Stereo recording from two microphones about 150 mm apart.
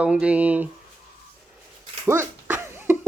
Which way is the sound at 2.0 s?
20° right (ahead or behind).